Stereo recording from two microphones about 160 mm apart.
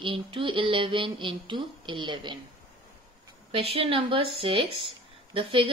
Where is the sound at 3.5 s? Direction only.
35° right (ahead or behind).